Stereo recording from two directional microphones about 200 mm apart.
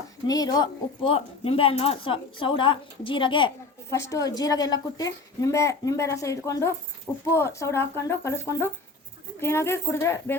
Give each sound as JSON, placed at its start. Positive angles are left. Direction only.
{"t": 0.3, "sound": "speech", "side_deg": 20}
{"t": 3.8, "sound": "a woman's voice", "side_deg": 15}